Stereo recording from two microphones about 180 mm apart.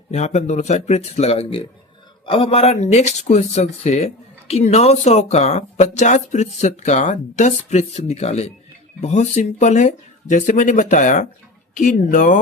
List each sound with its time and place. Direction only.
0.1 s speech: 40° left (ahead or behind)